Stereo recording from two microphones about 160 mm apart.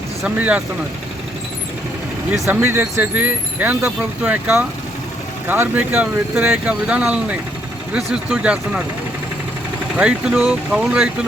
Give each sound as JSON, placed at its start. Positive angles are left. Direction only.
{"t": 0.2, "sound": "speech", "side_deg": -5}
{"t": 2.3, "sound": "speech", "side_deg": 0}
{"t": 2.6, "sound": "speech", "side_deg": -15}
{"t": 9.9, "sound": "speech", "side_deg": -5}